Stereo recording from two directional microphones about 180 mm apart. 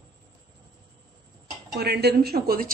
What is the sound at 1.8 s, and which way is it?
Speech, 65° right (ahead or behind).